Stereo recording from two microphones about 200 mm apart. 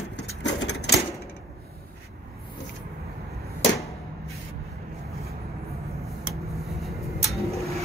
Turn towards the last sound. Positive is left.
turn(degrees=0)  # may be behind; listen again after turning